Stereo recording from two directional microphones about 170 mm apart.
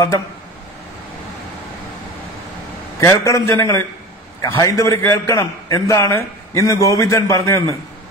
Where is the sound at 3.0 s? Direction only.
15° left (ahead or behind).